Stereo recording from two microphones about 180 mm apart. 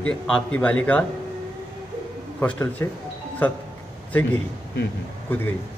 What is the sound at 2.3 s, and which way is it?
Speech, 10° left (ahead or behind).